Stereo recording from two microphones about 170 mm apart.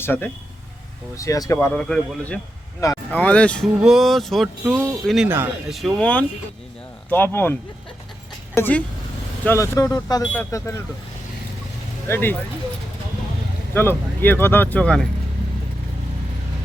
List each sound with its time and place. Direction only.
0.0 s speech: 15° left (ahead or behind)
1.5 s speech: 5° left (ahead or behind)
8.5 s speech: 10° left (ahead or behind)
12.0 s speech: 15° left (ahead or behind)
13.7 s speech: 15° left (ahead or behind)